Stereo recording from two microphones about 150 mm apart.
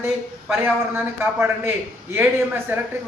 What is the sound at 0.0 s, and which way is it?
A woman's voice, 15° right (ahead or behind).